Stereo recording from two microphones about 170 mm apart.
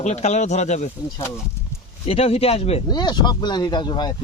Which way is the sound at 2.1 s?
35° left (ahead or behind).